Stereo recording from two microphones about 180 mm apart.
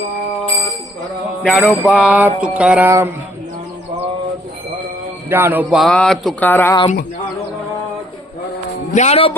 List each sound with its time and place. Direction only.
1.4 s mantra: centre (ahead or behind)
5.3 s a sound: 10° right (ahead or behind); by 6.7 s 10° left (ahead or behind)
8.9 s a man's voice: 40° left (ahead or behind)